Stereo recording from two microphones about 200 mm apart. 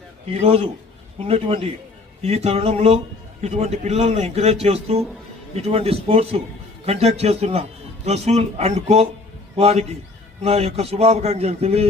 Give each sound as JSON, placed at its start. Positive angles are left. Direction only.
{"t": 0.3, "sound": "a man's voice", "side_deg": -30}